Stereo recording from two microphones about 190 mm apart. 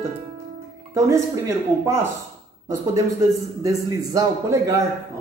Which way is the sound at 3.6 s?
20° right (ahead or behind).